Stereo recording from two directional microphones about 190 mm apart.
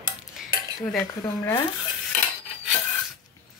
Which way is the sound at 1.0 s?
15° left (ahead or behind).